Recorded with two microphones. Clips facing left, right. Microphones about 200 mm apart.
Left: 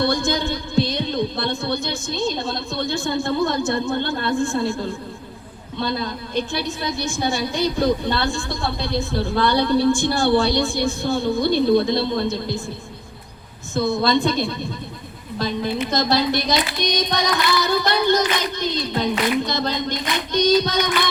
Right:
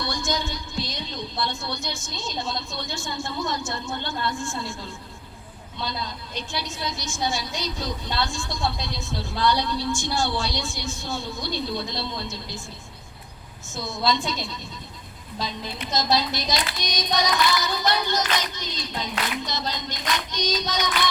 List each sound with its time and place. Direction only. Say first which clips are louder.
0.0 s a woman's voice: left 8 dB; 60° left (ahead or behind)
13.7 s a woman's voice: left 7 dB; 60° left (ahead or behind)